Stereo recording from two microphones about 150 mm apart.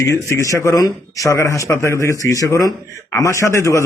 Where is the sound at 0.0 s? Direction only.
20° left (ahead or behind).